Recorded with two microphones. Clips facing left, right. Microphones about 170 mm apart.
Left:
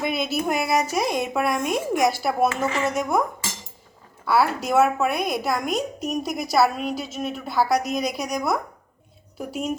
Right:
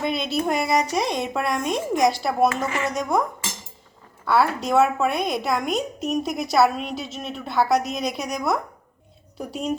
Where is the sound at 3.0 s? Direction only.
5° left (ahead or behind).